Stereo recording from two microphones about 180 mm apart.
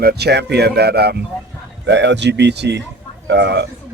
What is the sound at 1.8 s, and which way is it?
Speech, 75° right (ahead or behind).